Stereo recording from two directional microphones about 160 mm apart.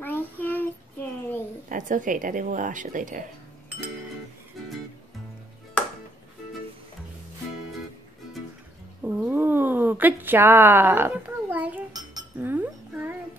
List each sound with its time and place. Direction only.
0.0 s child singing: 10° left (ahead or behind)
1.7 s a woman's voice: 55° right (ahead or behind)
4.6 s music: centre (ahead or behind)
9.0 s a sound: 10° right (ahead or behind)
11.9 s cutlery: 25° right (ahead or behind)
12.4 s chink: 10° right (ahead or behind)